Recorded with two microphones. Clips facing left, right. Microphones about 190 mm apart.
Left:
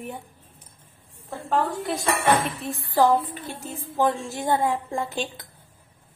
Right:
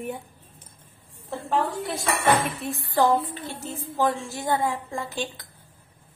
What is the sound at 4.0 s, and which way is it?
A woman's voice, 20° left (ahead or behind).